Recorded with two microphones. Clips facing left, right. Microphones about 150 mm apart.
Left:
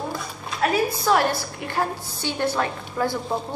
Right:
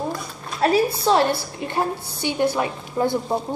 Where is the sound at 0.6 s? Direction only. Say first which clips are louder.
Right 3 dB; 30° right (ahead or behind); by 3.1 s 15° right (ahead or behind).